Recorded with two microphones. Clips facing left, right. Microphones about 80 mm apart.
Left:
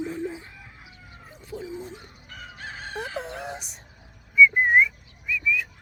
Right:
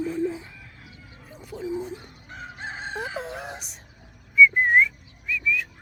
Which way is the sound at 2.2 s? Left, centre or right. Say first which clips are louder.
Right 3 dB; right.